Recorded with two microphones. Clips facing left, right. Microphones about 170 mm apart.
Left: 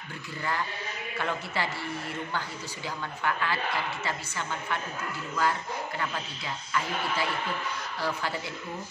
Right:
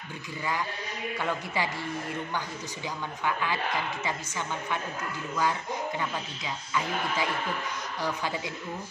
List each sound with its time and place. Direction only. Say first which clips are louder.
1.2 s speech: even; 15° right (ahead or behind)
3.3 s speech: even; 15° right (ahead or behind)
5.4 s speech: even; 15° right (ahead or behind)